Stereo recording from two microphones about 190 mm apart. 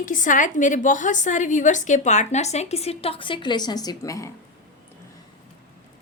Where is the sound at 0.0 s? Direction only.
45° left (ahead or behind); by 4.3 s 15° left (ahead or behind).